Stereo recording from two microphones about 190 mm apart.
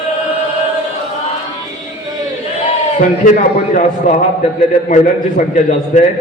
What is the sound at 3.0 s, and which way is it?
A man's voice, 40° left (ahead or behind).